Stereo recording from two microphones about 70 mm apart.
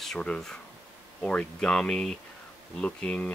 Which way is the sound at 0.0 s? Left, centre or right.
Centre.